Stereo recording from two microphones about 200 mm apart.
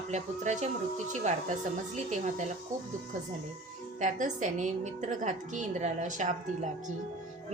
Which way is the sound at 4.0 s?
35° right (ahead or behind).